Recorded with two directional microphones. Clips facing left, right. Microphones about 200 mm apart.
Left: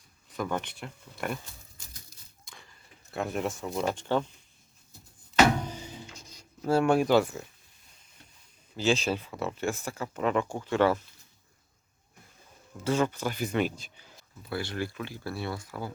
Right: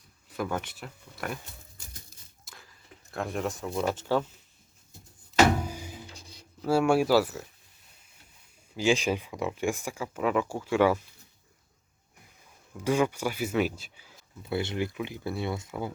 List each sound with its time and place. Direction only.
0.3 s speech: 5° right (ahead or behind)
2.4 s a sound: 5° right (ahead or behind)
5.5 s music: 10° right (ahead or behind)
6.7 s speech: 10° right (ahead or behind)
8.7 s speech: 15° right (ahead or behind)
12.8 s speech: 15° right (ahead or behind)
14.5 s speech: 20° right (ahead or behind)